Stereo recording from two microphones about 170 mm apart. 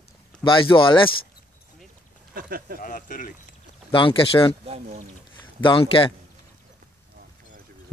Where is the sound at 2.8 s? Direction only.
55° left (ahead or behind).